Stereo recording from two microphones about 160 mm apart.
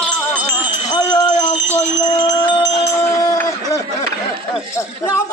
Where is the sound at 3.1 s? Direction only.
25° left (ahead or behind).